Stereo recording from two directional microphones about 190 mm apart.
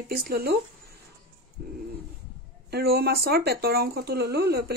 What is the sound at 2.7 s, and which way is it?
Speech, 55° right (ahead or behind).